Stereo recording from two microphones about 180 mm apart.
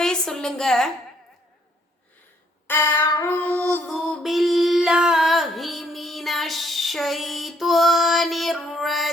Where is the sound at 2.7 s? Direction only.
15° left (ahead or behind).